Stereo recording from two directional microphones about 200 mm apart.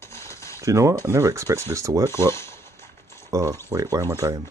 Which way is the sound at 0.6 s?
15° right (ahead or behind).